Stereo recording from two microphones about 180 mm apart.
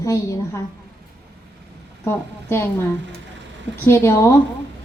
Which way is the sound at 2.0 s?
15° left (ahead or behind).